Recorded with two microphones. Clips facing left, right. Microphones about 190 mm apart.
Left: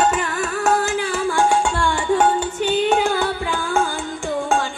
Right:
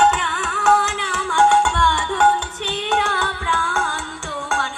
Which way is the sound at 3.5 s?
25° left (ahead or behind).